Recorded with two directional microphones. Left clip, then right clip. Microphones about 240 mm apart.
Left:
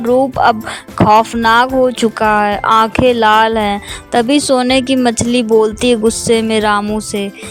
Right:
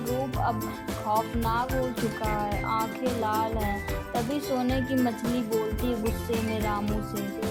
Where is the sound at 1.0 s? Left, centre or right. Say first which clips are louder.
Left 18 dB; left.